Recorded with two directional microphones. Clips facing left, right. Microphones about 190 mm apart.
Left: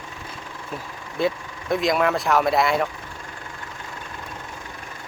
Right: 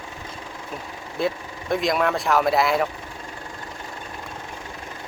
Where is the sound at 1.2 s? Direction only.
Centre (ahead or behind).